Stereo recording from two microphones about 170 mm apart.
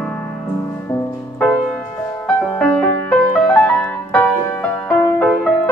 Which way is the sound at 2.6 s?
10° left (ahead or behind).